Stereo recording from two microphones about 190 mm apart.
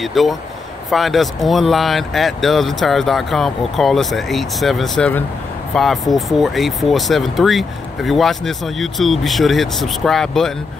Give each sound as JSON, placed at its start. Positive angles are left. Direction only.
{"t": 0.0, "sound": "speech", "side_deg": 0}